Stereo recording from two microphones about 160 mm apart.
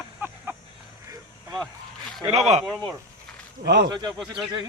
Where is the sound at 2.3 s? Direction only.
45° right (ahead or behind).